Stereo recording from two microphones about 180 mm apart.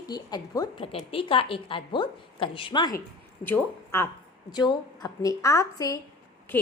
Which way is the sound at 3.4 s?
10° left (ahead or behind).